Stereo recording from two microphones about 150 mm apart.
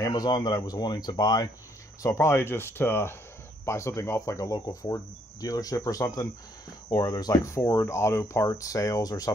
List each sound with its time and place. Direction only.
0.0 s speech: 25° left (ahead or behind)